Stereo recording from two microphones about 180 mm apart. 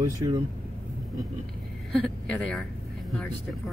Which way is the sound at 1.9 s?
5° left (ahead or behind).